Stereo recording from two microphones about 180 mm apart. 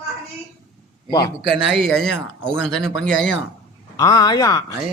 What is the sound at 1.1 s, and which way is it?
Speech, 20° left (ahead or behind).